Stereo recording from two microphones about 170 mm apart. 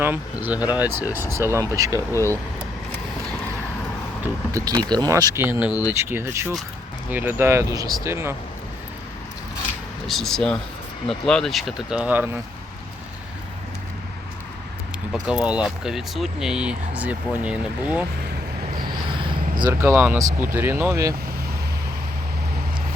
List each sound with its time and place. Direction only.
0.0 s speech: 10° right (ahead or behind)
2.0 s speech: 15° left (ahead or behind)
4.2 s speech: 20° right (ahead or behind)
10.1 s speech: centre (ahead or behind)
15.1 s speech: 5° right (ahead or behind)
19.8 s speech: 10° right (ahead or behind)